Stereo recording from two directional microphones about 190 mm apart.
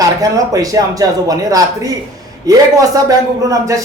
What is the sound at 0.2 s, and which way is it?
A man's voice, 20° right (ahead or behind).